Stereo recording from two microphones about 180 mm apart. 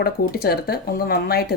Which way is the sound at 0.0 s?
60° left (ahead or behind).